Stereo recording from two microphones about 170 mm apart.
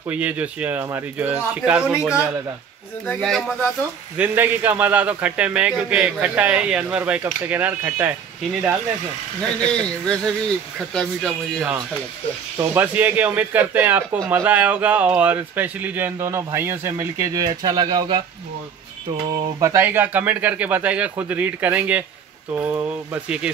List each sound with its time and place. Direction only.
0.1 s a man's voice: 10° right (ahead or behind)
4.2 s a man's voice: 10° right (ahead or behind)
9.7 s speech: 5° left (ahead or behind)
12.5 s a man's voice: 10° right (ahead or behind)
19.2 s a man's voice: 20° right (ahead or behind)